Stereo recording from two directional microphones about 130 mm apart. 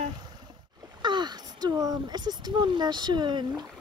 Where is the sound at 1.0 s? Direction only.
35° right (ahead or behind).